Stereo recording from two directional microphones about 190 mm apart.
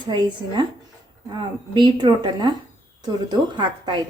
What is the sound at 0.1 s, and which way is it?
A woman's voice, 25° right (ahead or behind).